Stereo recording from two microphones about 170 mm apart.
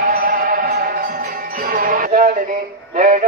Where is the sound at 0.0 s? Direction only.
55° right (ahead or behind).